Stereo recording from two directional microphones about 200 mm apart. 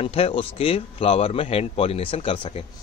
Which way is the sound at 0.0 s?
30° left (ahead or behind).